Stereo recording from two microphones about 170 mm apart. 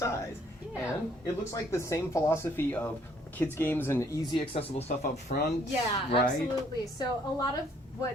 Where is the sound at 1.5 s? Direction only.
15° left (ahead or behind).